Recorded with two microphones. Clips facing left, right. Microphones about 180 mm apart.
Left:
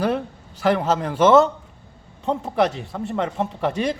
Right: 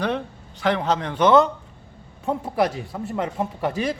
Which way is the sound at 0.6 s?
5° left (ahead or behind).